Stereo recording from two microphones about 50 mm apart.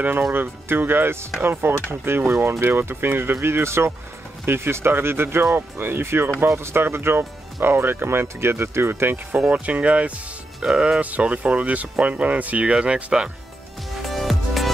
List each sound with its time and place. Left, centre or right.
0.3 s speech: right
9.5 s speech: right
12.7 s speech: centre
14.0 s music: centre